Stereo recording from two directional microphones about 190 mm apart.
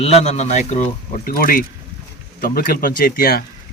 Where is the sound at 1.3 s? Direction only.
50° left (ahead or behind).